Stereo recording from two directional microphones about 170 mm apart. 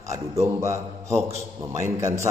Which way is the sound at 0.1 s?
15° right (ahead or behind).